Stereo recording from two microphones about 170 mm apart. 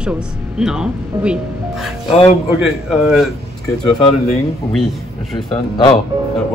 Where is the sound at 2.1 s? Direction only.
35° left (ahead or behind).